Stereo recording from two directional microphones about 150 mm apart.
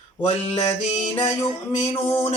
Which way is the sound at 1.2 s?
20° left (ahead or behind).